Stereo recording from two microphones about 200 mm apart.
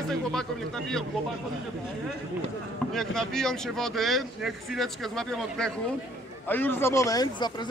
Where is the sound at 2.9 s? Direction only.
5° left (ahead or behind).